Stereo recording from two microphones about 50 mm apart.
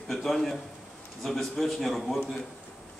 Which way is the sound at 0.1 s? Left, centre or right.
Centre.